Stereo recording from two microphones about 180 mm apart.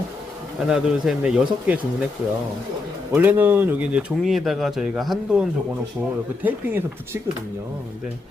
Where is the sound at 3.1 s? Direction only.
10° right (ahead or behind).